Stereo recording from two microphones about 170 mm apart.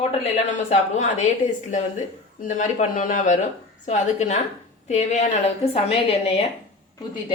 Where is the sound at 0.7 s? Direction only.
40° left (ahead or behind).